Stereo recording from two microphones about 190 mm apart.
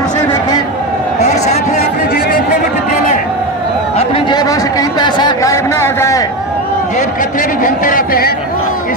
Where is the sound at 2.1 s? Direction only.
50° left (ahead or behind).